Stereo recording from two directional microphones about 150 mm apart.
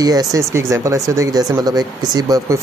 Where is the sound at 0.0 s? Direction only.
25° right (ahead or behind).